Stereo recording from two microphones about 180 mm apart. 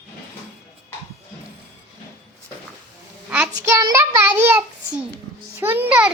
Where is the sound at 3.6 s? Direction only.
15° right (ahead or behind).